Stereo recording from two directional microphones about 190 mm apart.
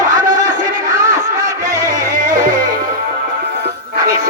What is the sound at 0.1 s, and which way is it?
Music, 20° right (ahead or behind).